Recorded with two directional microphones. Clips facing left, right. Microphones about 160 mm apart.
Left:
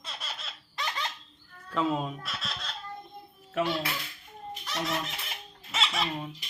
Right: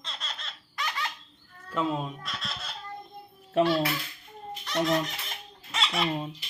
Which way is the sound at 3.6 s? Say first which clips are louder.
Right 5 dB; 30° right (ahead or behind).